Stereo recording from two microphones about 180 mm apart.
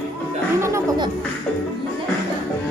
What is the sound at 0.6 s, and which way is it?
Music, 15° right (ahead or behind).